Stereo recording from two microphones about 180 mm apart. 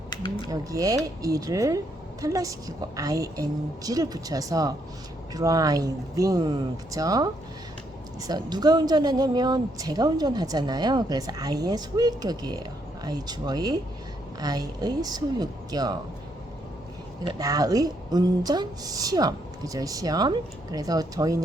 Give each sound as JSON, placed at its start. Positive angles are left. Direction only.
{"t": 0.5, "sound": "a woman's voice", "side_deg": -20}
{"t": 17.2, "sound": "a woman's voice", "side_deg": -20}